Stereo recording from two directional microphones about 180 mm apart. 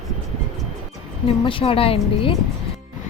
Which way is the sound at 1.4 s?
30° left (ahead or behind).